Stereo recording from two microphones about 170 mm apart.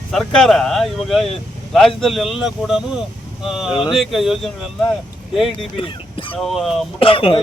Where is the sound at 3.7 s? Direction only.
30° left (ahead or behind).